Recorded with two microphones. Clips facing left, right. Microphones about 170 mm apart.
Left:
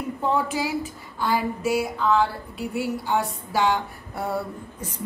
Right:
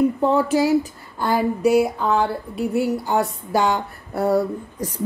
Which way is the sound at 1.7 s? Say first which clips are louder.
Right 4 dB; 50° right (ahead or behind).